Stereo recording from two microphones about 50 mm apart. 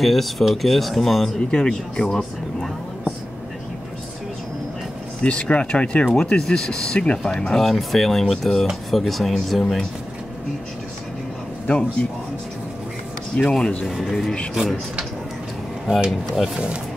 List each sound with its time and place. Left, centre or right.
0.0 s speech: centre
1.5 s speech: centre
5.2 s speech: left; by 9.8 s centre
11.6 s speech: left
13.4 s speech: centre
13.8 s speech: centre